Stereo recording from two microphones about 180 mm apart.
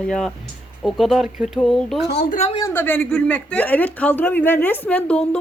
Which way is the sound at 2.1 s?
60° left (ahead or behind).